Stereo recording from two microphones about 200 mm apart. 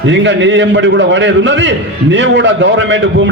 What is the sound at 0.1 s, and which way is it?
A man's voice, 65° right (ahead or behind).